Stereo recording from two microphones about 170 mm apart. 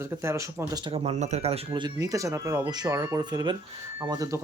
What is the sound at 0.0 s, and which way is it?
Speech, 15° right (ahead or behind).